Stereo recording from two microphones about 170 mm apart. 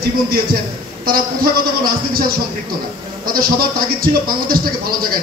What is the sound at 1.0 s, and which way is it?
A man's voice, 60° right (ahead or behind).